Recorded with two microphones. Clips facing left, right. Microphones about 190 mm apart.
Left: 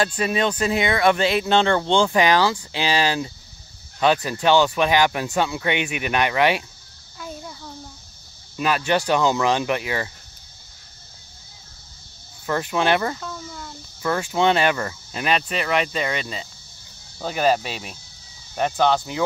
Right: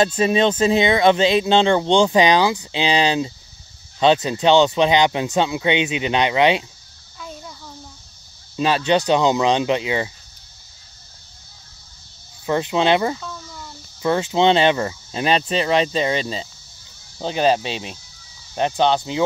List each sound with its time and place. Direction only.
0.0 s speech: 25° right (ahead or behind)
7.2 s a sound: 5° left (ahead or behind)
8.5 s speech: 25° right (ahead or behind)
12.4 s speech: 20° right (ahead or behind)
13.2 s cricket: centre (ahead or behind)
14.0 s speech: 20° right (ahead or behind)